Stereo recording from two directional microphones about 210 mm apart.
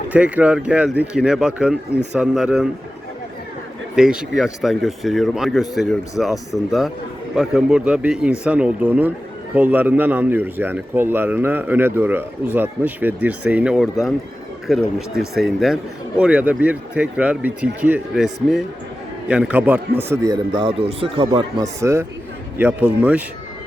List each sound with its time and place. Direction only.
0.1 s speech: 5° right (ahead or behind)
3.9 s speech: 5° right (ahead or behind)